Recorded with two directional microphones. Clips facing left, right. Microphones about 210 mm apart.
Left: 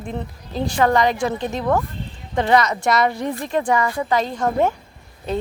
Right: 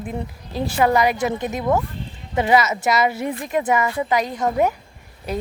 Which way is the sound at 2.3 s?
5° right (ahead or behind).